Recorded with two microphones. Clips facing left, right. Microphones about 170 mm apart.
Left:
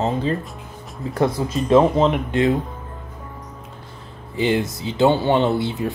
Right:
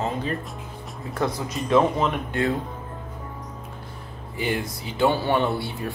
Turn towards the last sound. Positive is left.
turn(degrees=20)  # may be behind; listen again after turning